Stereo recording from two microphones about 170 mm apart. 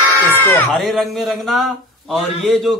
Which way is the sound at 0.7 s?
Centre (ahead or behind).